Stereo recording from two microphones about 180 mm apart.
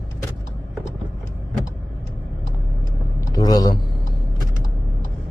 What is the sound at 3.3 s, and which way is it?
Speech, 20° left (ahead or behind).